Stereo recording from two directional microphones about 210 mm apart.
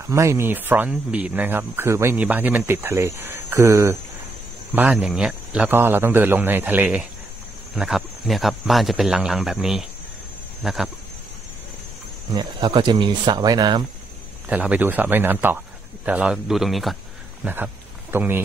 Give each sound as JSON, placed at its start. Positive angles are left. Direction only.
{"t": 0.1, "sound": "speech", "side_deg": -15}
{"t": 12.4, "sound": "speech", "side_deg": -20}
{"t": 14.5, "sound": "speech", "side_deg": -5}
{"t": 18.1, "sound": "speech", "side_deg": -10}